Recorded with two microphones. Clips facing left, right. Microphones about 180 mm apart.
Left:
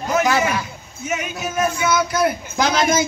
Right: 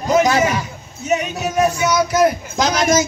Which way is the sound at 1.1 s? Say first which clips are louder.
Right 6 dB; 40° right (ahead or behind).